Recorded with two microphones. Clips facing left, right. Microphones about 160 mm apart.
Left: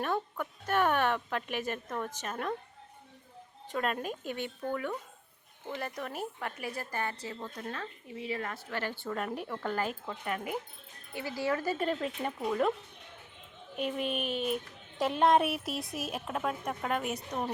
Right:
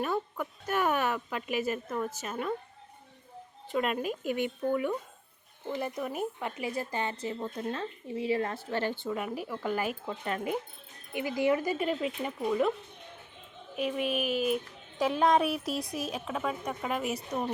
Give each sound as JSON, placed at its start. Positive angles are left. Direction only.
{"t": 0.0, "sound": "a woman's voice", "side_deg": -5}
{"t": 3.7, "sound": "a woman's voice", "side_deg": -5}
{"t": 9.0, "sound": "speech", "side_deg": -5}
{"t": 10.1, "sound": "a woman's voice", "side_deg": -25}
{"t": 13.7, "sound": "speech", "side_deg": -5}